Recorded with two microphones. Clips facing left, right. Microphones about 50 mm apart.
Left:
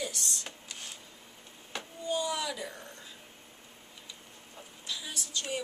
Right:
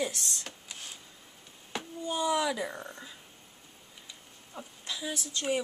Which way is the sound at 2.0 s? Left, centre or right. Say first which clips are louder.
Right 4 dB; right.